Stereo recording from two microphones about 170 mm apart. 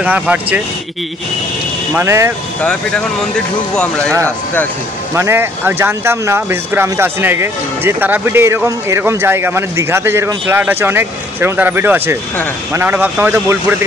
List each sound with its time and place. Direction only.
0.0 s speech: 10° right (ahead or behind)
2.0 s speech: 15° right (ahead or behind)
2.6 s speech: 5° left (ahead or behind)
5.1 s speech: 15° right (ahead or behind)